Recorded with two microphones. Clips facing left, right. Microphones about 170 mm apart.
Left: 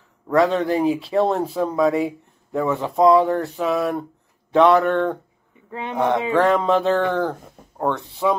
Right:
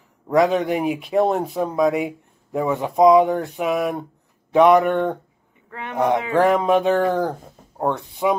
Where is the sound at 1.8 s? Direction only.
5° right (ahead or behind).